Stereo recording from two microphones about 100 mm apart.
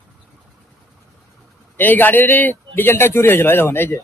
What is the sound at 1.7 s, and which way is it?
A man's voice, 20° left (ahead or behind).